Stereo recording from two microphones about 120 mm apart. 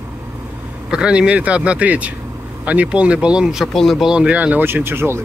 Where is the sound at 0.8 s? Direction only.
10° right (ahead or behind).